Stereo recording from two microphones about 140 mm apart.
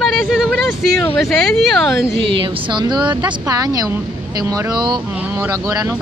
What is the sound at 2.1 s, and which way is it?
Speech, 40° right (ahead or behind).